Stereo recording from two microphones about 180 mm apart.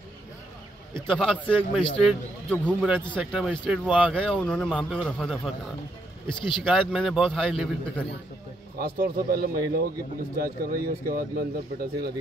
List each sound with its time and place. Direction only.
1.0 s a man's voice: 5° left (ahead or behind)
4.4 s a man's voice: 5° left (ahead or behind)
6.6 s a man's voice: centre (ahead or behind)
8.7 s speech: 55° right (ahead or behind)